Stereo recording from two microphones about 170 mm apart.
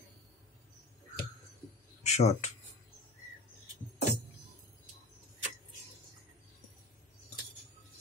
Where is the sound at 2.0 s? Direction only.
40° left (ahead or behind).